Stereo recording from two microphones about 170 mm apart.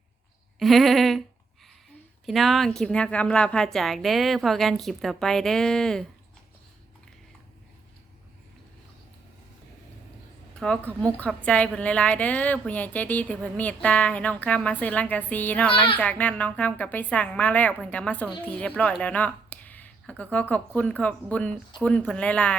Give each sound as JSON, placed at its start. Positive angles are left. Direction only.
{"t": 0.6, "sound": "a woman's voice", "side_deg": 0}
{"t": 2.2, "sound": "a woman's voice", "side_deg": 0}
{"t": 10.6, "sound": "a woman's voice", "side_deg": 5}